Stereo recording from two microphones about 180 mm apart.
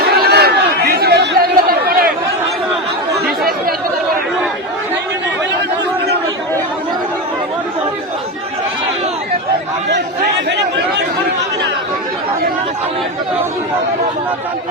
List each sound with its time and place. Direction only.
0.0 s chatter: 60° right (ahead or behind)